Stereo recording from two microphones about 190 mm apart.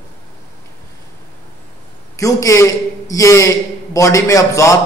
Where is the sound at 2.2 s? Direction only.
15° left (ahead or behind).